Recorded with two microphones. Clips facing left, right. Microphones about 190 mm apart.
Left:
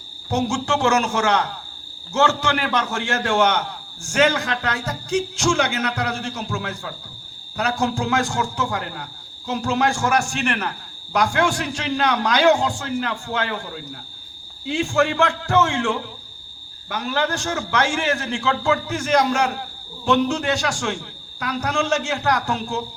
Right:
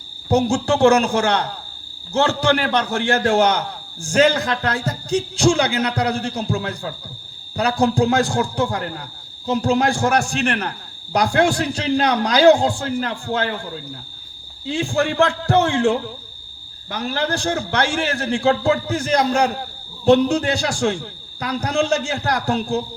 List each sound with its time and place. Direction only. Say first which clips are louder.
0.3 s a man's voice: right 5 dB; 35° right (ahead or behind)
14.8 s a man's voice: right 1 dB; 35° right (ahead or behind)